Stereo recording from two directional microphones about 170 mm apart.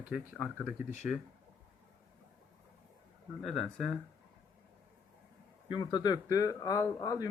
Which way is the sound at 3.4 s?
Centre (ahead or behind).